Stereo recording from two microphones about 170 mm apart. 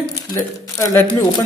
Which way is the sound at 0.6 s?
15° left (ahead or behind).